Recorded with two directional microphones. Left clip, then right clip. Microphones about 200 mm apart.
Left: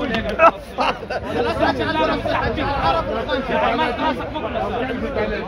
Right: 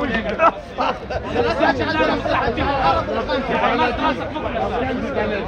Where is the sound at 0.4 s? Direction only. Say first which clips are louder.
Left 3 dB; 55° left (ahead or behind).